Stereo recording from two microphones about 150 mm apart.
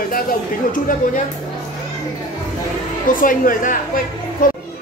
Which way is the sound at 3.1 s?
65° left (ahead or behind).